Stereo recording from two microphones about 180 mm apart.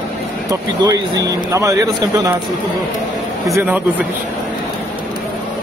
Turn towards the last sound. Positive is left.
turn(degrees=-15)  # may be behind; listen again after turning